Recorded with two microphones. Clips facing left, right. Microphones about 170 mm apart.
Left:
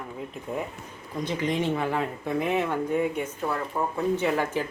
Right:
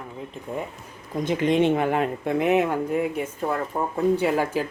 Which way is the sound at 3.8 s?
20° right (ahead or behind).